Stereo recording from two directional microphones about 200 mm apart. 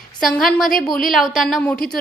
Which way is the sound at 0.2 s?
Centre (ahead or behind).